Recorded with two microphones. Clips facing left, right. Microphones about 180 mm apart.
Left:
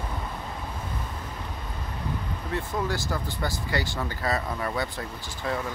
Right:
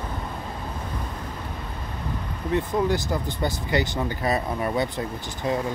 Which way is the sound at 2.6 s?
20° right (ahead or behind).